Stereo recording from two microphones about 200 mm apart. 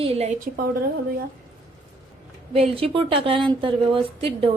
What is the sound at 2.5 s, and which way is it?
A woman's voice, 30° right (ahead or behind).